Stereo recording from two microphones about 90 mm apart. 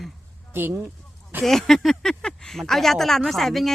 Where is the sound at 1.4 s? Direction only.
5° left (ahead or behind).